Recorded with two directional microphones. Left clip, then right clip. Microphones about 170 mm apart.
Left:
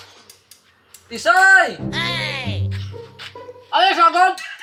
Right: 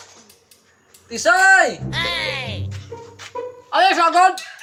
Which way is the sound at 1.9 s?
Centre (ahead or behind).